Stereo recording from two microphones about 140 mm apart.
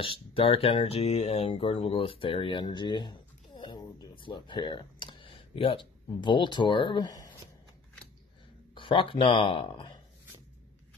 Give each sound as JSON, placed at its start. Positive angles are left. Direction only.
{"t": 0.0, "sound": "speech", "side_deg": 40}
{"t": 8.7, "sound": "speech", "side_deg": 40}